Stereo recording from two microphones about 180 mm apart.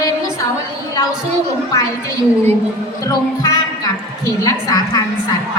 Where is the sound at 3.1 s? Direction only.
20° left (ahead or behind).